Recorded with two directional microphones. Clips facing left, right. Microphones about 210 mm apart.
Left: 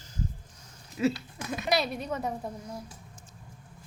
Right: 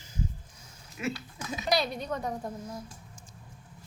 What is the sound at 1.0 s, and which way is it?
Speech, 30° left (ahead or behind).